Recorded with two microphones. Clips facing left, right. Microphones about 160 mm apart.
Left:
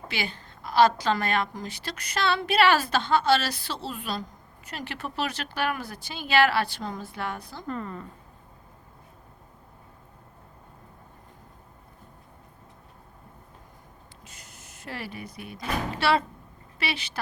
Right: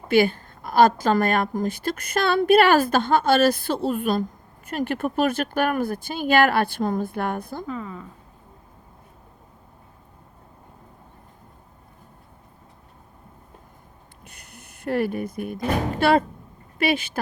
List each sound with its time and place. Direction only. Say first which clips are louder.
0.1 s a woman's voice: right 16 dB; 50° right (ahead or behind)
7.7 s speech: left 3 dB; centre (ahead or behind)
14.3 s speech: right 5 dB; 60° right (ahead or behind)